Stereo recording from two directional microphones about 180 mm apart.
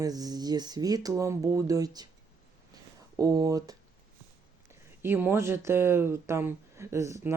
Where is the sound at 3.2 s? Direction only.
20° right (ahead or behind).